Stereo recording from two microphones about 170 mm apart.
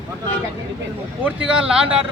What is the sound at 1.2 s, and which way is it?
Speech, 5° right (ahead or behind).